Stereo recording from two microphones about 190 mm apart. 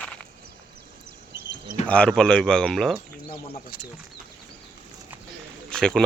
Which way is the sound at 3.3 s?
55° left (ahead or behind).